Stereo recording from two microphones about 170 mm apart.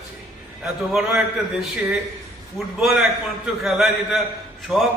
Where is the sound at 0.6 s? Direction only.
5° right (ahead or behind).